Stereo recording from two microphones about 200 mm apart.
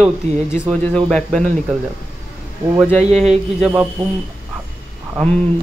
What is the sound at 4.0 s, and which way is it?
Speech, 20° right (ahead or behind).